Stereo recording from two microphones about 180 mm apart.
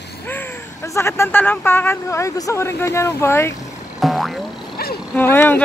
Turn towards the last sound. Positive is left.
turn(degrees=10)  # may be behind; listen again after turning